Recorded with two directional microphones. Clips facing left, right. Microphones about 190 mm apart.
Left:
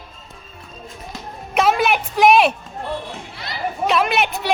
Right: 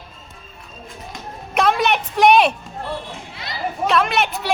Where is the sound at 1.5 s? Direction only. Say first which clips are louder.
Left 1 dB; centre (ahead or behind).